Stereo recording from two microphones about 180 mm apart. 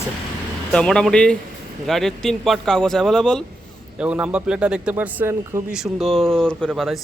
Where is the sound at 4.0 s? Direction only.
5° right (ahead or behind).